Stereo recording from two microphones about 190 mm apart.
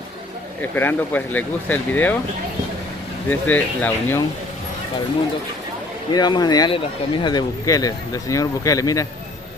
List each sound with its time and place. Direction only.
0.6 s speech: 10° left (ahead or behind)
3.3 s speech: 10° left (ahead or behind)
6.1 s speech: 20° left (ahead or behind)